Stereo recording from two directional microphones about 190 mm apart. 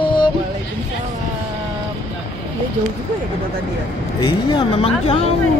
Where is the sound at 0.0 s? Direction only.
25° left (ahead or behind).